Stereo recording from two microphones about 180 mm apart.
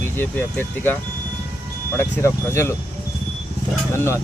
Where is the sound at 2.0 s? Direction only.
15° left (ahead or behind).